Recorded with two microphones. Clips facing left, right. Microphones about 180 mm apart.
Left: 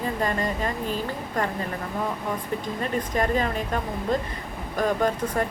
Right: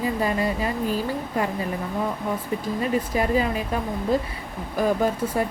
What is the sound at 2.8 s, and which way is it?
Speech, 5° right (ahead or behind).